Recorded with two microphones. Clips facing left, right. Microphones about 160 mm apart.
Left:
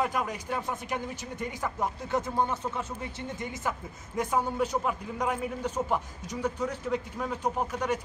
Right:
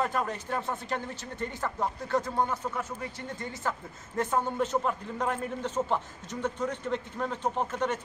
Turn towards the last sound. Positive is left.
turn(degrees=10)  # may be behind; listen again after turning